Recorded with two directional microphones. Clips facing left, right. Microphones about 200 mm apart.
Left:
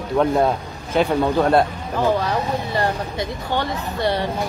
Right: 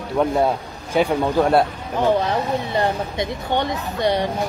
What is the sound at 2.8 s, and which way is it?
Speech, 20° right (ahead or behind).